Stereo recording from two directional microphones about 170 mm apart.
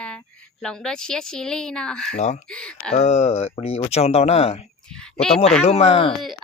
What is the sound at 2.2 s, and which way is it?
Speech, 40° left (ahead or behind).